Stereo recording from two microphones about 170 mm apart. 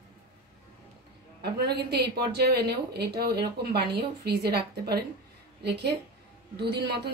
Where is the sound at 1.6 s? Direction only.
75° right (ahead or behind).